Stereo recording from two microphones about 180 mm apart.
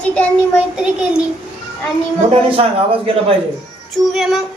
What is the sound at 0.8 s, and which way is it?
Child singing, 5° right (ahead or behind).